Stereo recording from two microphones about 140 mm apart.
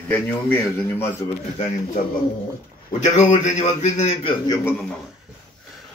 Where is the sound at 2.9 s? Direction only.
60° left (ahead or behind).